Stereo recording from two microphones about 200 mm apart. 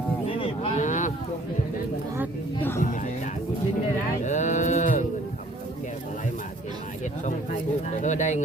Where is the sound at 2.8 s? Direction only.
40° left (ahead or behind).